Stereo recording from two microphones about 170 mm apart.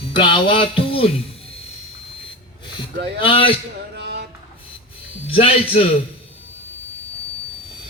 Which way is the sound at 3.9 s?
75° right (ahead or behind).